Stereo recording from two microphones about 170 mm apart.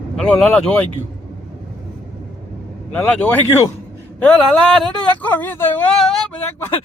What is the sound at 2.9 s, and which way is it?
Speech, 10° left (ahead or behind).